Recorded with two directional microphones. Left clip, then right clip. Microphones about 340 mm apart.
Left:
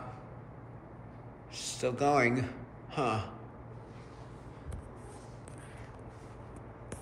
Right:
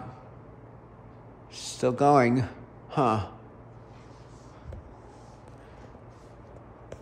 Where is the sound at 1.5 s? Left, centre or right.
Centre.